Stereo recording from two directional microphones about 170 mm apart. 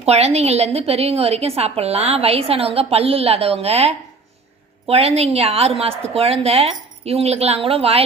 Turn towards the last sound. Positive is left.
turn(degrees=-35)  # may be behind; listen again after turning